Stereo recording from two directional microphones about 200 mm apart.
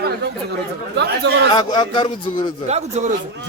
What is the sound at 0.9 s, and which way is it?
Speech, 60° right (ahead or behind).